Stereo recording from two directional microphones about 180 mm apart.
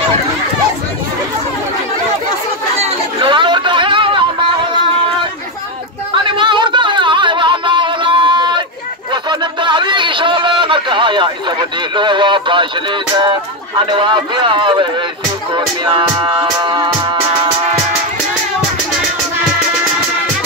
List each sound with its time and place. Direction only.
2.8 s hubbub: 30° right (ahead or behind)
6.1 s a sound: 25° right (ahead or behind)
9.1 s speech: 25° right (ahead or behind)
15.5 s music: 25° right (ahead or behind)